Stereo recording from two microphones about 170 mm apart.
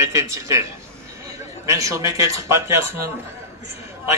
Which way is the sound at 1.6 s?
15° right (ahead or behind).